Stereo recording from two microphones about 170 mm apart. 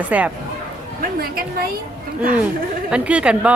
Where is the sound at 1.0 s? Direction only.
60° right (ahead or behind).